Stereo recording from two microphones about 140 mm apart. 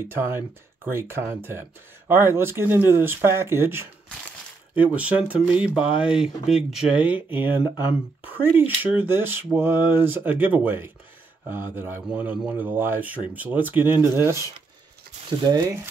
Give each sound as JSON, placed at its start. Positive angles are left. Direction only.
{"t": 0.1, "sound": "speech", "side_deg": -15}